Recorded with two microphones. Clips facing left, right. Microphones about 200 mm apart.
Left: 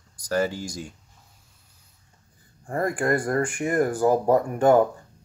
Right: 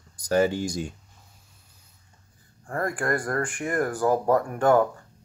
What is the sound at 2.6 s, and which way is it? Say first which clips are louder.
Speech: left 3 dB; 20° left (ahead or behind).